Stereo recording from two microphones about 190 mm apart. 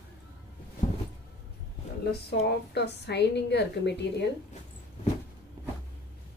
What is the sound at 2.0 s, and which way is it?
A woman's voice, 60° left (ahead or behind).